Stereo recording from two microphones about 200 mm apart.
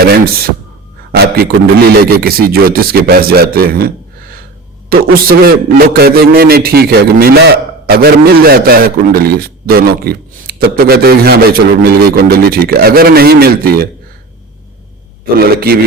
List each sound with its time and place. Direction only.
0.0 s a man's voice: 50° right (ahead or behind)
15.2 s a man's voice: 50° right (ahead or behind)